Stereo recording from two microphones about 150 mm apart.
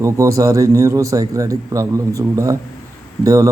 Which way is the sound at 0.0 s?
20° right (ahead or behind).